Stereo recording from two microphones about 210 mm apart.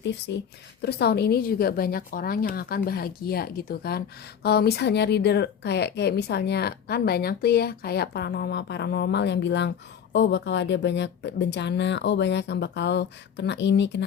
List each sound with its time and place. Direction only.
0.0 s a woman's voice: 55° left (ahead or behind)